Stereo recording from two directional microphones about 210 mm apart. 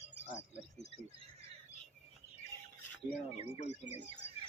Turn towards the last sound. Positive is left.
turn(degrees=30)  # may be behind; listen again after turning